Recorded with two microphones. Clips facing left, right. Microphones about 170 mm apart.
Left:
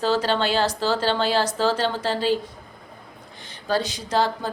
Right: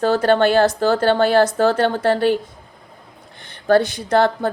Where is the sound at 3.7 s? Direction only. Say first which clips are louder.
Right 9 dB; 55° right (ahead or behind).